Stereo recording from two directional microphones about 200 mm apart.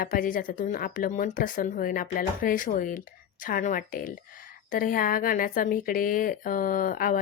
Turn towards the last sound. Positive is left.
turn(degrees=45)  # may be behind; listen again after turning